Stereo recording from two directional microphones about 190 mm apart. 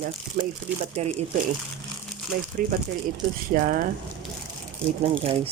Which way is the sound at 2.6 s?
45° right (ahead or behind).